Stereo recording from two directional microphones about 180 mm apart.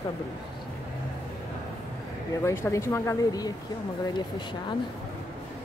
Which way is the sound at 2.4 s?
15° left (ahead or behind).